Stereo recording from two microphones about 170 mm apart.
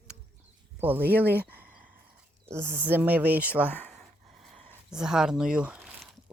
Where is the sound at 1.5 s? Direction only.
10° right (ahead or behind).